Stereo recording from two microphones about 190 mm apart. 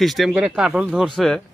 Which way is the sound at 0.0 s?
Centre (ahead or behind).